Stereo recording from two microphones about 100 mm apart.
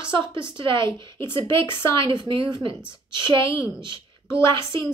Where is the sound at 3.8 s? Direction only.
55° right (ahead or behind).